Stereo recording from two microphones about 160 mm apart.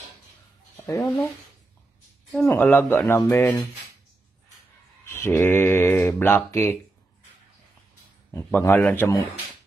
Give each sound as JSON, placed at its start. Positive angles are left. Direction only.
{"t": 0.7, "sound": "a sound", "side_deg": 15}
{"t": 1.0, "sound": "speech", "side_deg": 0}
{"t": 2.3, "sound": "speech", "side_deg": 10}
{"t": 5.0, "sound": "speech", "side_deg": 15}
{"t": 8.3, "sound": "a man's voice", "side_deg": 15}